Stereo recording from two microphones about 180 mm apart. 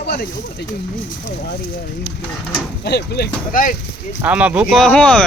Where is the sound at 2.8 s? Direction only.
65° left (ahead or behind); by 3.7 s 50° left (ahead or behind).